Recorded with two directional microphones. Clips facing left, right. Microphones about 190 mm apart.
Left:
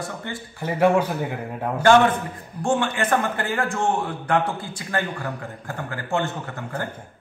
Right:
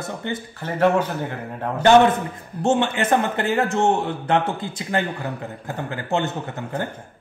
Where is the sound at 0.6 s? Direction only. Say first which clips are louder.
Even; 10° left (ahead or behind).